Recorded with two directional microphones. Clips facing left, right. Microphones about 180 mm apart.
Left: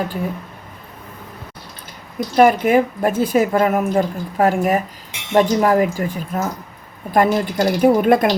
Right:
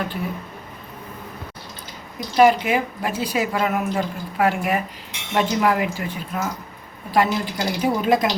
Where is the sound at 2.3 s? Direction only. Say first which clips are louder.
Left 3 dB; 50° left (ahead or behind).